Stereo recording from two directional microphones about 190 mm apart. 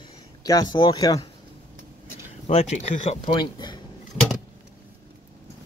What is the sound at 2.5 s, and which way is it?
Speech, 35° left (ahead or behind).